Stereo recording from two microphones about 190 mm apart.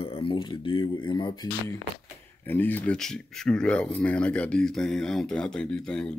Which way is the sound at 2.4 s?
10° left (ahead or behind).